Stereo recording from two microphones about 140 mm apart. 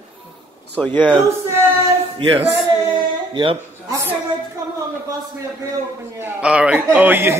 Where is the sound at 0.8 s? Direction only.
5° left (ahead or behind).